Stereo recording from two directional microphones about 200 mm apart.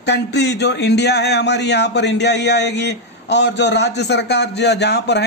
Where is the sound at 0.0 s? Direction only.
55° left (ahead or behind).